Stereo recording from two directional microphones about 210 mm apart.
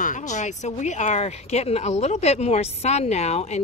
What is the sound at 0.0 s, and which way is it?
Speech, 35° left (ahead or behind).